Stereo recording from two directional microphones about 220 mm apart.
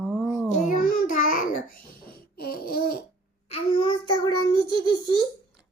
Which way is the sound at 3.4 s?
25° left (ahead or behind).